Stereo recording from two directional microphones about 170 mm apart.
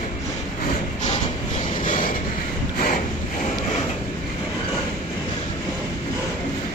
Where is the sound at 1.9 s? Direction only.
50° left (ahead or behind).